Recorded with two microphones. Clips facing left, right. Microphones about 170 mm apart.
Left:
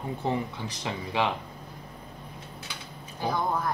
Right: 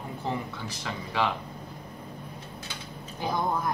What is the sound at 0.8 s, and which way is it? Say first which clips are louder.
Speech: left 1 dB; 20° left (ahead or behind).